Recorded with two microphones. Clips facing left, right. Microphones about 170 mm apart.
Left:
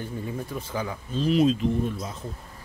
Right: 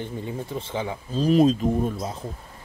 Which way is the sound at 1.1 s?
40° right (ahead or behind).